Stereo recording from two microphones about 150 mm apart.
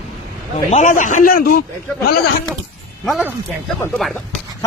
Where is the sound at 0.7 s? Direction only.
55° left (ahead or behind); by 1.6 s 75° left (ahead or behind).